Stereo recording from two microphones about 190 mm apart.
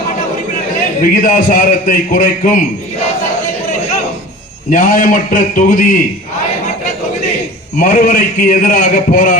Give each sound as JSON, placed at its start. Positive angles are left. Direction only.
{"t": 1.0, "sound": "a man's voice", "side_deg": 45}
{"t": 4.7, "sound": "a man's voice", "side_deg": 45}
{"t": 7.8, "sound": "a man's voice", "side_deg": 45}